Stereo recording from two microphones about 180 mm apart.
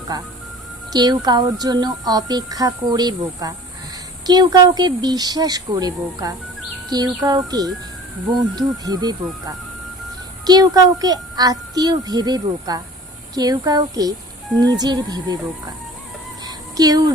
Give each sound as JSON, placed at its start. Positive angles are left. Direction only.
{"t": 0.1, "sound": "speech", "side_deg": -20}
{"t": 16.7, "sound": "speech", "side_deg": -20}